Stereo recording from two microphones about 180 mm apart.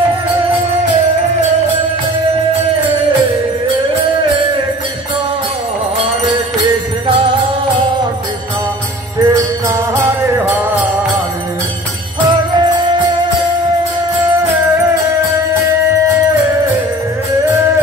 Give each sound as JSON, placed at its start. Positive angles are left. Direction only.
{"t": 9.2, "sound": "music", "side_deg": -20}
{"t": 12.5, "sound": "music", "side_deg": -25}